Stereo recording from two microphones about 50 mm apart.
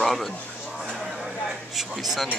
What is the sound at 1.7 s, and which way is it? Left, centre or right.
Speech, centre.